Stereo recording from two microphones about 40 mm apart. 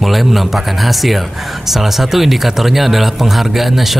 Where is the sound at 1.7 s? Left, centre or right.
Centre.